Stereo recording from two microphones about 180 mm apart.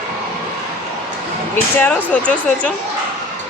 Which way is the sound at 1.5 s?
10° left (ahead or behind).